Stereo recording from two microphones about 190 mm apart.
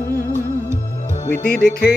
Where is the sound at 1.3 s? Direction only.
55° left (ahead or behind).